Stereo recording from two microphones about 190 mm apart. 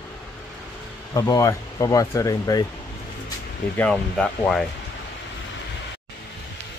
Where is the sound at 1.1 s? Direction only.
20° left (ahead or behind).